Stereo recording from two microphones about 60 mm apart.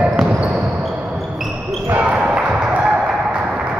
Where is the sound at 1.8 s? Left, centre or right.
Right.